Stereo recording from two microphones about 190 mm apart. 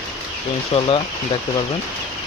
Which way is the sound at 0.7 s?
35° left (ahead or behind).